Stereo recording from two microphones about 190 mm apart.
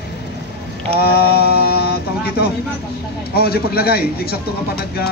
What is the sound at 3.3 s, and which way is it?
Mantra, 55° left (ahead or behind).